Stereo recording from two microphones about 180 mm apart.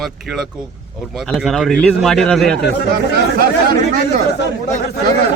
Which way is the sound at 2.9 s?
55° right (ahead or behind).